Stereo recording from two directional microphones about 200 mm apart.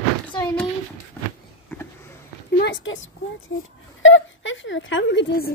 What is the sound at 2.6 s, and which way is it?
A woman's voice, 65° left (ahead or behind).